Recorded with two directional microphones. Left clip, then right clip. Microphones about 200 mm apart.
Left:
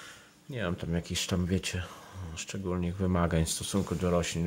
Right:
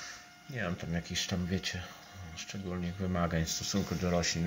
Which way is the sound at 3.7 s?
15° left (ahead or behind).